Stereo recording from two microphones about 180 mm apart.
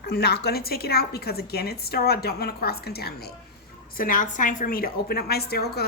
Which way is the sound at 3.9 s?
50° left (ahead or behind).